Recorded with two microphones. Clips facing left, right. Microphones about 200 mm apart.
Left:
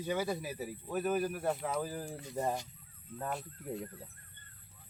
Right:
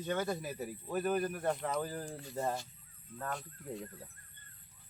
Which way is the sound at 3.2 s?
5° left (ahead or behind).